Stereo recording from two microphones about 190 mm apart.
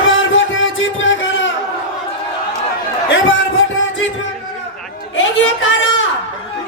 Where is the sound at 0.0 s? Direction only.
90° left.